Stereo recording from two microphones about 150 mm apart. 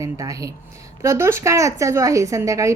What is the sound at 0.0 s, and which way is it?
A woman's voice, 20° right (ahead or behind).